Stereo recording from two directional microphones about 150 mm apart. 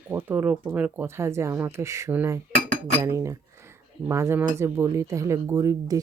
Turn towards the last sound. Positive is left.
turn(degrees=-20)  # may be behind; listen again after turning